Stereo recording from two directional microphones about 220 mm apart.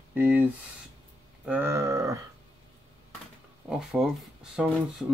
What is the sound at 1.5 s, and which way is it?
Speech, 10° right (ahead or behind).